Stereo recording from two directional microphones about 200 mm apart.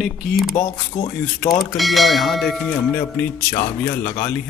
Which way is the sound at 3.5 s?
10° left (ahead or behind).